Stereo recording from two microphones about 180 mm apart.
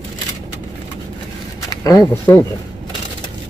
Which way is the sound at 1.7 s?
20° left (ahead or behind).